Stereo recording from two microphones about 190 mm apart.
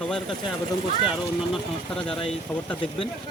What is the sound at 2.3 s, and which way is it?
Speech, 5° left (ahead or behind).